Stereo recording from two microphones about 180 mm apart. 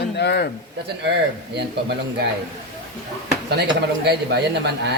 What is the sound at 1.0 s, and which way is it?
Speech, 70° right (ahead or behind).